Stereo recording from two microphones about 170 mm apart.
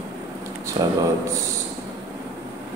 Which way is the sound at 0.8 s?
20° right (ahead or behind).